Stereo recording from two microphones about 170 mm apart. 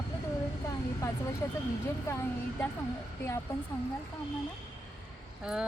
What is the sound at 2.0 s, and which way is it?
Speech, 15° left (ahead or behind).